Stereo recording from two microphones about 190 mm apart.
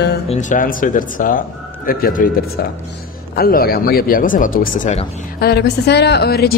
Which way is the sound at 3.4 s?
50° left (ahead or behind).